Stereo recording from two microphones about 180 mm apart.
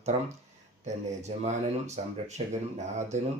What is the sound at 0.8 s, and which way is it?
Speech, 40° right (ahead or behind).